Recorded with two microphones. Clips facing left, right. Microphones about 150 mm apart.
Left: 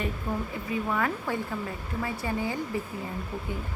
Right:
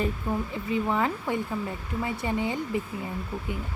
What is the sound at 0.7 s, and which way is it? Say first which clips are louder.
Speech: right 3 dB; 25° right (ahead or behind).